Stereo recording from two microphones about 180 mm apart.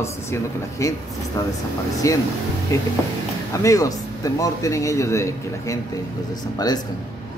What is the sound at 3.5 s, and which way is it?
Speech, 20° left (ahead or behind).